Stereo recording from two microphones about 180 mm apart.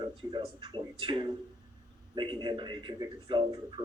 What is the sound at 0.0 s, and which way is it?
A man's voice, 25° right (ahead or behind).